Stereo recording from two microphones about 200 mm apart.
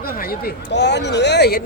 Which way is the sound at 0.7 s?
60° left (ahead or behind).